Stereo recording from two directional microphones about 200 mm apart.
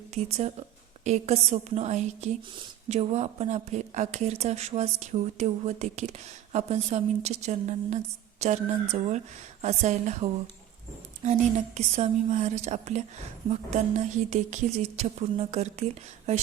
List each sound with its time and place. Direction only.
0.1 s speech: 30° right (ahead or behind)